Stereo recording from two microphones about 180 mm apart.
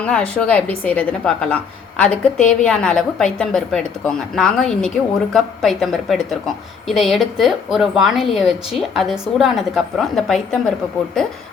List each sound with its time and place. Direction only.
0.0 s a woman's voice: 5° left (ahead or behind)